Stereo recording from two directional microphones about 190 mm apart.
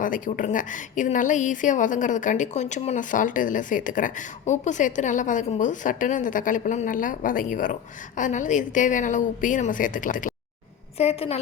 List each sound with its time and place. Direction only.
0.0 s a woman's voice: 45° left (ahead or behind)
10.9 s a woman's voice: 30° left (ahead or behind)